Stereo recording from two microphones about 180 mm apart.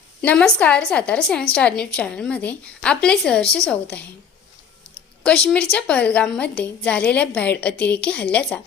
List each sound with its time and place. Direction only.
0.2 s a woman's voice: 5° left (ahead or behind)
5.2 s a woman's voice: 5° left (ahead or behind)